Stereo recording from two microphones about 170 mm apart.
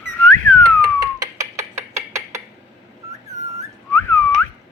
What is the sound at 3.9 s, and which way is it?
Whistling, 10° left (ahead or behind).